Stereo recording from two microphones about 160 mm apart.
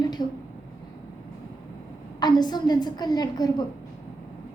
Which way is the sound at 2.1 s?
25° left (ahead or behind).